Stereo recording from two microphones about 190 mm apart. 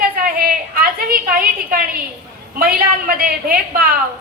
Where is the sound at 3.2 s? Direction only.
50° right (ahead or behind).